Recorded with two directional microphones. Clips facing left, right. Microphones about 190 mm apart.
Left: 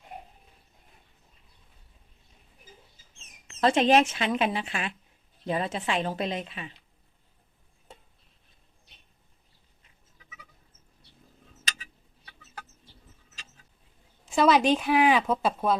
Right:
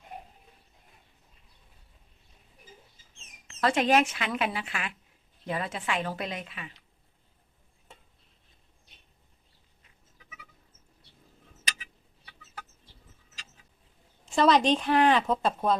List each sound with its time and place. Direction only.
3.6 s speech: 25° left (ahead or behind)
14.3 s speech: 5° left (ahead or behind)